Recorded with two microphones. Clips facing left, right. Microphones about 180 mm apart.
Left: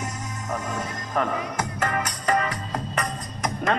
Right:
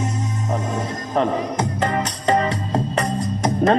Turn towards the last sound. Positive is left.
turn(degrees=-35)  # may be behind; listen again after turning